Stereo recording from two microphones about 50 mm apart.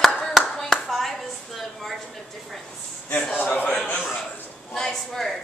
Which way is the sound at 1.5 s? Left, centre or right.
Centre.